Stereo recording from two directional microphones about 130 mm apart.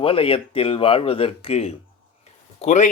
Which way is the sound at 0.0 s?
45° left (ahead or behind).